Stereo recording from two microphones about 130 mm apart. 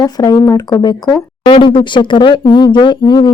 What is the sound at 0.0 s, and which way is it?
Speech, 30° left (ahead or behind).